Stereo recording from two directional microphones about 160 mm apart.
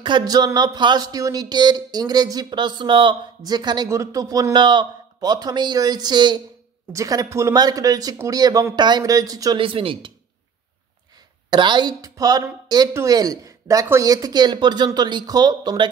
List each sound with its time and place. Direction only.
0.0 s speech: 25° right (ahead or behind)
11.5 s speech: 30° right (ahead or behind)